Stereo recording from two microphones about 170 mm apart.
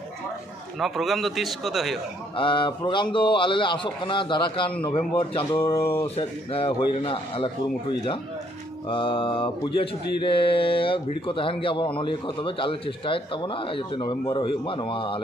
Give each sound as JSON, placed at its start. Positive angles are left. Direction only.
{"t": 0.7, "sound": "a man's voice", "side_deg": 0}
{"t": 2.3, "sound": "a man's voice", "side_deg": 30}
{"t": 5.6, "sound": "speech", "side_deg": 15}
{"t": 6.1, "sound": "speech", "side_deg": 35}
{"t": 8.8, "sound": "speech", "side_deg": 30}